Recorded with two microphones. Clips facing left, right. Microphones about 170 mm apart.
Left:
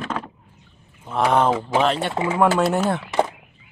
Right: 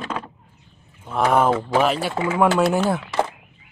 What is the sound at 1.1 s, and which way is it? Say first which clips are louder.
Speech: even; centre (ahead or behind).